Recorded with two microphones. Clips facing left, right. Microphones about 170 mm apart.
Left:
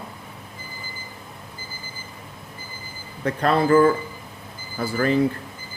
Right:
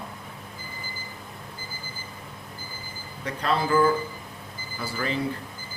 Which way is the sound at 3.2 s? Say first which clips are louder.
Left 7 dB; 55° left (ahead or behind).